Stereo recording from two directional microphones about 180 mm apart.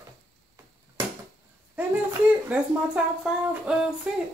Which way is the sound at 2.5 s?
5° right (ahead or behind).